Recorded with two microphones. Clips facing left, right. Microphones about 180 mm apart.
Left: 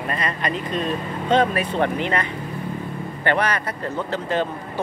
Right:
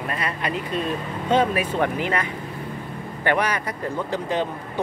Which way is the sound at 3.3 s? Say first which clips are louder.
Left 1 dB; 10° right (ahead or behind).